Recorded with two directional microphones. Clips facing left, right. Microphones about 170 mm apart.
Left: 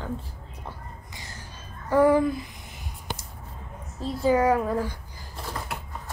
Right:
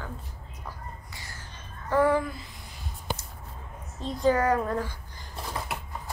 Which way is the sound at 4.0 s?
5° left (ahead or behind).